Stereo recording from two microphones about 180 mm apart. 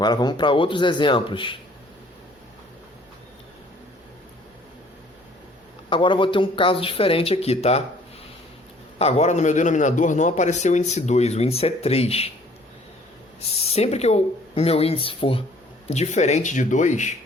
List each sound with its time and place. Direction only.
0.0 s a man's voice: 25° left (ahead or behind)
5.9 s a man's voice: 30° left (ahead or behind)
9.0 s a man's voice: 35° left (ahead or behind)
13.5 s a man's voice: 35° left (ahead or behind)